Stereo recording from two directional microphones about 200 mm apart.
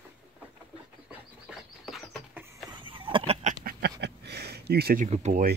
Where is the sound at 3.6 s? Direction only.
55° right (ahead or behind); by 5.5 s 40° right (ahead or behind).